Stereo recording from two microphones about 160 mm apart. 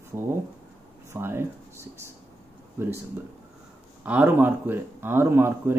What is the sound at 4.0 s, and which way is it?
Speech, 10° right (ahead or behind).